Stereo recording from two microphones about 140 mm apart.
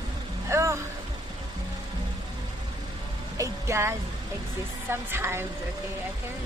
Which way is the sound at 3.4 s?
20° right (ahead or behind).